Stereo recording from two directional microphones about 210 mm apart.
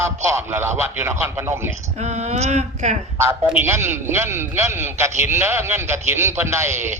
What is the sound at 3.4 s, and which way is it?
A man's voice, 10° right (ahead or behind).